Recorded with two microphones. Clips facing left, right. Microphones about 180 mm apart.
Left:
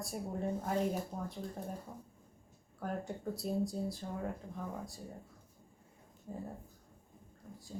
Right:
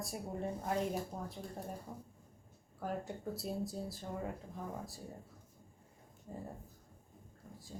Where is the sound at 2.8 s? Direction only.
Centre (ahead or behind).